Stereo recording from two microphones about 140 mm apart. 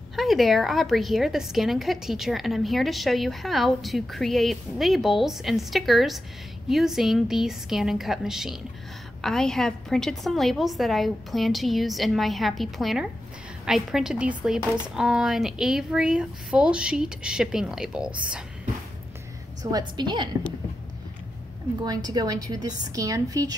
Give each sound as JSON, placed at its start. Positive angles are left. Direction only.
{"t": 0.1, "sound": "a woman's voice", "side_deg": 0}
{"t": 19.6, "sound": "a woman's voice", "side_deg": -30}
{"t": 21.8, "sound": "a woman's voice", "side_deg": -30}